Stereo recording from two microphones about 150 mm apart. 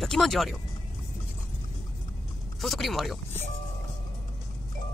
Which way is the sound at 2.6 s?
Centre (ahead or behind).